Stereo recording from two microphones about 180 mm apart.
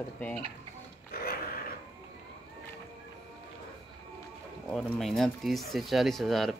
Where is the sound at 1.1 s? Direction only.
55° left (ahead or behind).